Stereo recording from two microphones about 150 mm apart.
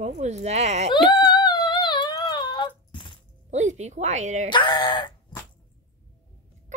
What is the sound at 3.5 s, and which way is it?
Speech, 50° right (ahead or behind).